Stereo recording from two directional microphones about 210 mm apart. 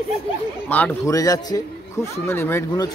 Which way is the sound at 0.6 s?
5° left (ahead or behind).